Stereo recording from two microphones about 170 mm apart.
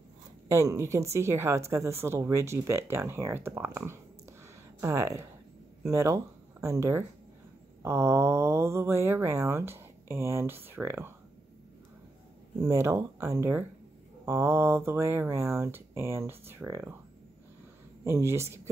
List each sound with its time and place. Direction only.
0.5 s speech: 20° right (ahead or behind)
12.6 s speech: 15° right (ahead or behind)
18.0 s speech: 15° right (ahead or behind)